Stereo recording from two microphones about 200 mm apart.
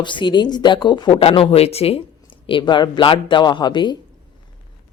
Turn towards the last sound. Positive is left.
turn(degrees=20)  # may be behind; listen again after turning